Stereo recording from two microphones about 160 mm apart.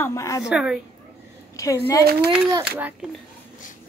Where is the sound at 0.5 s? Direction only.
5° right (ahead or behind).